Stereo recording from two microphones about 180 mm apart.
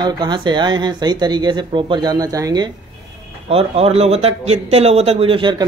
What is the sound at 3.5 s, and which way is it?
Speech, 35° right (ahead or behind).